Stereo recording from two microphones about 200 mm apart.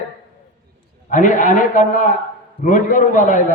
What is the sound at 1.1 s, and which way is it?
A man's voice, 40° left (ahead or behind).